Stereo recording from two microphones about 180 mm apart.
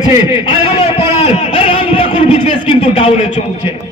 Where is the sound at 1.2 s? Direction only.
30° left (ahead or behind).